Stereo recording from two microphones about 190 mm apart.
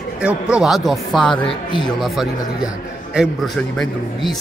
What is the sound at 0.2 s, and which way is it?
Speech, 5° right (ahead or behind).